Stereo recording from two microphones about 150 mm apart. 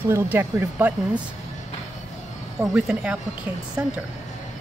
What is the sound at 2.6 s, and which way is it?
Speech, 5° right (ahead or behind).